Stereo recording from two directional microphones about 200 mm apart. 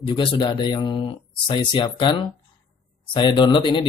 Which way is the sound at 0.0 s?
25° left (ahead or behind).